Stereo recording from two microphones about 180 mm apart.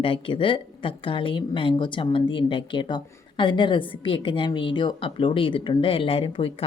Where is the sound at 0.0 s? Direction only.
30° left (ahead or behind).